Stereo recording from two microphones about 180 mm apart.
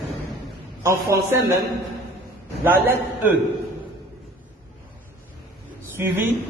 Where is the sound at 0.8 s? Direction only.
15° right (ahead or behind).